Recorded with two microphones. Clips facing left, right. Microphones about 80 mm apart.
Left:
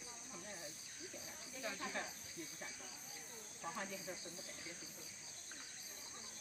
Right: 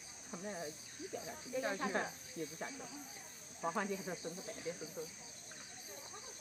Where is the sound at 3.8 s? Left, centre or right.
Right.